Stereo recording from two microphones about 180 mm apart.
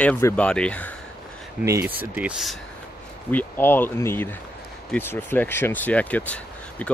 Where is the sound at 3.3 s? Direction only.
10° left (ahead or behind).